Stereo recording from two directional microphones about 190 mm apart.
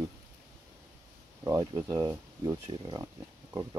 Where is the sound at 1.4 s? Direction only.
20° right (ahead or behind).